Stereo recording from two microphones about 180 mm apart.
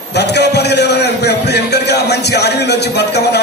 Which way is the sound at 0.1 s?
70° left (ahead or behind).